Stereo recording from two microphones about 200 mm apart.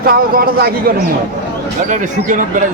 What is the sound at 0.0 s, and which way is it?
Speech, 45° right (ahead or behind).